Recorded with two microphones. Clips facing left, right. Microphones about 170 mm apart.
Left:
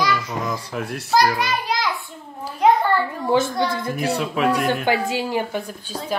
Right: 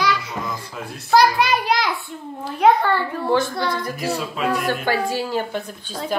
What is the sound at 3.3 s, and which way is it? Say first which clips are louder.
Speech: left 1 dB; 20° left (ahead or behind).